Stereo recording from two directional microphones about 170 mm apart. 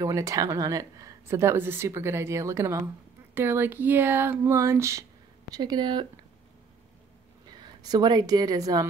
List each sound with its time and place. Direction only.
0.0 s speech: 20° right (ahead or behind)
7.4 s a woman's voice: 25° right (ahead or behind)